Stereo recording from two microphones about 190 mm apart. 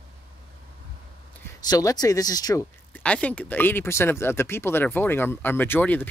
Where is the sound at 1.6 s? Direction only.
20° left (ahead or behind).